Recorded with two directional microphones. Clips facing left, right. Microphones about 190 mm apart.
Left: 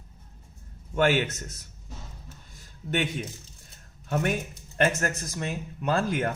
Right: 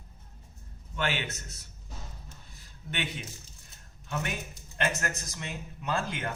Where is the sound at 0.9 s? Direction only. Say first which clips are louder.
Left 9 dB; 45° left (ahead or behind).